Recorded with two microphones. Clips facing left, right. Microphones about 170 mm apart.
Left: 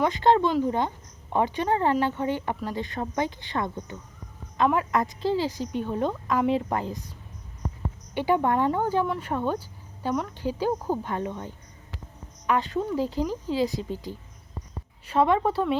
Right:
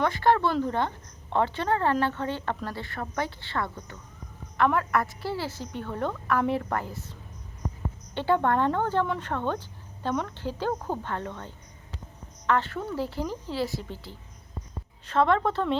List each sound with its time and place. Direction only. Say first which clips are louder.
0.0 s speech: left 2 dB; 20° left (ahead or behind)